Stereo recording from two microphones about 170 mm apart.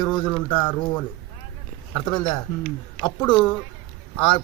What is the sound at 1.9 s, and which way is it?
Speech, 25° left (ahead or behind).